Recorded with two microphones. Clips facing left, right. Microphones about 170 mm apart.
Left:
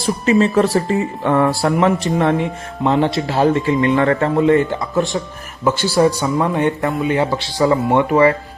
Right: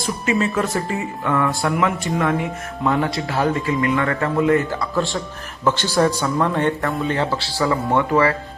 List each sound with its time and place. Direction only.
0.3 s speech: 35° left (ahead or behind)